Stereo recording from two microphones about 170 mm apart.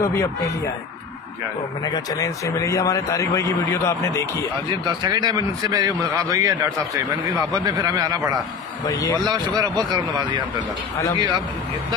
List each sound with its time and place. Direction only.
0.0 s a man's voice: 15° left (ahead or behind)
2.0 s a man's voice: 20° left (ahead or behind)
4.6 s a man's voice: 25° right (ahead or behind)
8.8 s a man's voice: 20° left (ahead or behind)
9.2 s a man's voice: 25° right (ahead or behind)